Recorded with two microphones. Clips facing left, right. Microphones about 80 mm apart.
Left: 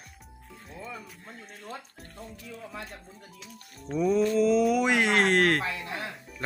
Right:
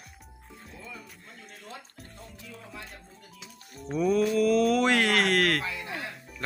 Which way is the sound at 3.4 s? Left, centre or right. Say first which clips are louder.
Right 2 dB; centre.